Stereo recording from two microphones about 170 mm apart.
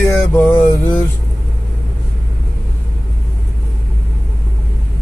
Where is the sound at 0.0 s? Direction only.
10° left (ahead or behind).